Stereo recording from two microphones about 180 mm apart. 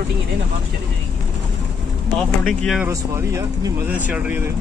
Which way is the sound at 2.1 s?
5° left (ahead or behind).